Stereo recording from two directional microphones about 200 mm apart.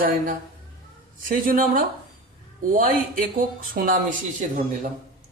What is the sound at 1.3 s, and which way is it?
Speech, 45° right (ahead or behind).